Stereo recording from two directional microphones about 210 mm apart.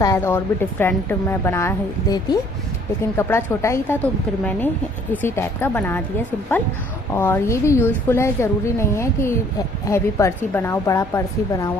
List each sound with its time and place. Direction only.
0.0 s a woman's voice: 15° left (ahead or behind)
3.2 s a woman's voice: 10° left (ahead or behind)
7.2 s a woman's voice: 10° left (ahead or behind)